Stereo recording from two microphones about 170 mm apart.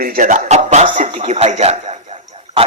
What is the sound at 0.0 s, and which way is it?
A man's voice, 50° right (ahead or behind).